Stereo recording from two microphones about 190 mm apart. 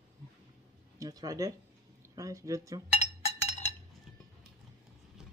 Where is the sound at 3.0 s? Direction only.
35° left (ahead or behind).